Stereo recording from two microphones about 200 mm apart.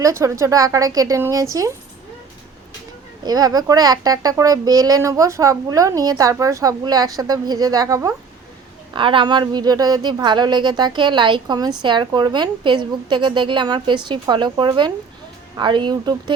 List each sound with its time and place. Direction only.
0.0 s a woman's voice: 15° right (ahead or behind)
3.2 s a woman's voice: 20° right (ahead or behind)